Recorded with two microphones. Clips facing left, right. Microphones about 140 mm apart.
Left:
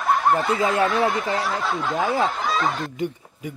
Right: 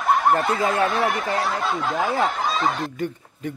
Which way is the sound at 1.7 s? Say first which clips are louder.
Even; centre (ahead or behind).